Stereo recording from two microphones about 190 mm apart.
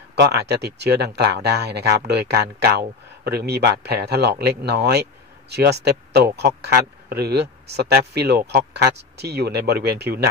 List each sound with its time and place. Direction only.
0.1 s speech: 60° right (ahead or behind)